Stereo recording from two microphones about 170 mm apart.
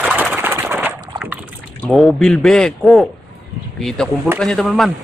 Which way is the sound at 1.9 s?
Centre (ahead or behind).